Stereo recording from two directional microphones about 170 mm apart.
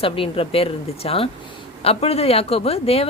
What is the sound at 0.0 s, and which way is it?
Speech, 35° left (ahead or behind).